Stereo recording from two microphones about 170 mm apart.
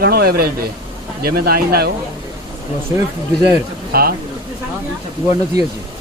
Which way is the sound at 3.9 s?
60° right (ahead or behind).